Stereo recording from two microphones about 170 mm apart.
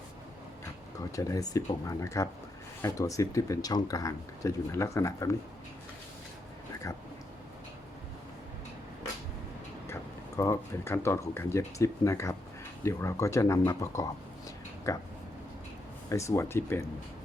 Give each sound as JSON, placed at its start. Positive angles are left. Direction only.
{"t": 1.1, "sound": "speech", "side_deg": 20}
{"t": 9.8, "sound": "speech", "side_deg": 20}
{"t": 16.0, "sound": "speech", "side_deg": 15}